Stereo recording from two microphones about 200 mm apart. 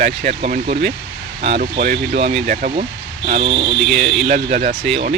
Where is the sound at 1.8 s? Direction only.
45° right (ahead or behind); by 3.7 s 25° right (ahead or behind).